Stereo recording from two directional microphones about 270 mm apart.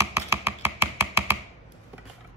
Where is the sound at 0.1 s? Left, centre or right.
Centre.